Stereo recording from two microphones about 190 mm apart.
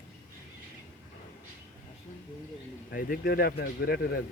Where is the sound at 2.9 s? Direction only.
50° left (ahead or behind).